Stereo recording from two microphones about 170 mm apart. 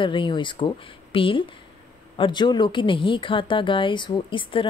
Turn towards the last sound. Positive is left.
turn(degrees=30)  # may be behind; listen again after turning